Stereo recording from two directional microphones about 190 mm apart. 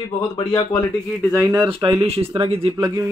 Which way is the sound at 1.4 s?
10° right (ahead or behind).